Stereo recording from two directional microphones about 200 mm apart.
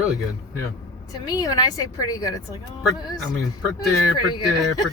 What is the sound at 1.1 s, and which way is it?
Speech, 20° left (ahead or behind).